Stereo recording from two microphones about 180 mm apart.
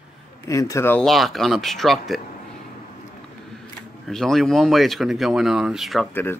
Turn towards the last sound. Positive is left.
turn(degrees=10)  # may be behind; listen again after turning